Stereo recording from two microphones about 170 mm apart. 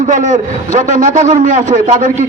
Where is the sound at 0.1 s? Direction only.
45° right (ahead or behind).